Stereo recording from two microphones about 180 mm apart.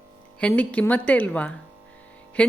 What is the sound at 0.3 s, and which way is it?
A woman's voice, 5° left (ahead or behind).